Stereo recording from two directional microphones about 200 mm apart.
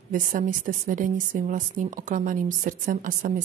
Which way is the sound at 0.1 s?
40° right (ahead or behind).